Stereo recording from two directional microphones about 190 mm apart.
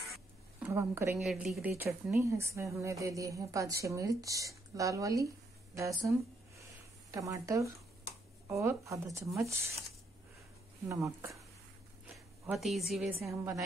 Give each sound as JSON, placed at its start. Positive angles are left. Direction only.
{"t": 0.6, "sound": "a woman's voice", "side_deg": -15}
{"t": 1.2, "sound": "speech", "side_deg": 0}
{"t": 6.6, "sound": "a sound", "side_deg": -15}
{"t": 8.5, "sound": "speech", "side_deg": -15}
{"t": 11.1, "sound": "speech", "side_deg": -15}
{"t": 12.4, "sound": "a woman's voice", "side_deg": 0}
{"t": 13.4, "sound": "speech", "side_deg": -15}